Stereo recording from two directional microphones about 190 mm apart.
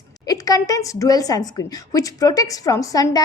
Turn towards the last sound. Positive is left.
turn(degrees=20)  # may be behind; listen again after turning